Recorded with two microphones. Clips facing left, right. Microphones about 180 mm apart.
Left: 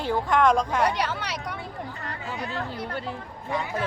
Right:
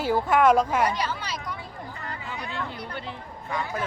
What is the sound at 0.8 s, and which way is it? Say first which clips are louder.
Speech: left 1 dB; 70° left (ahead or behind).